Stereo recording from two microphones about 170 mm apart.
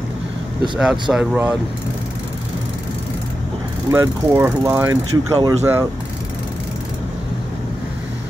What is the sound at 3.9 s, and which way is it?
Speech, 15° right (ahead or behind).